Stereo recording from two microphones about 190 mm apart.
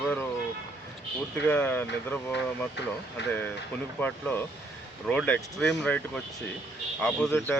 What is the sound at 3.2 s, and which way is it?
Speech, 65° left (ahead or behind).